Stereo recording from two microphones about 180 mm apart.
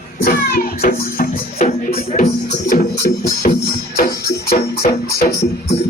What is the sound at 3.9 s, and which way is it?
Music, 60° left (ahead or behind).